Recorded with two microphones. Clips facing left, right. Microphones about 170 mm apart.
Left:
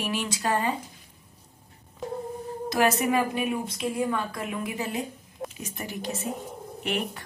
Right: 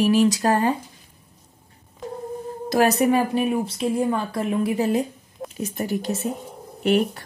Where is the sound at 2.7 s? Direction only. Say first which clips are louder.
Right 5 dB; 35° right (ahead or behind).